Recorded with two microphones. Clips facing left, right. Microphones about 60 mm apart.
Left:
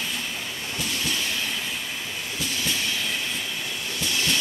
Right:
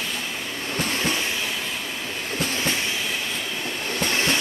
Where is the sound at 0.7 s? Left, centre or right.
Right.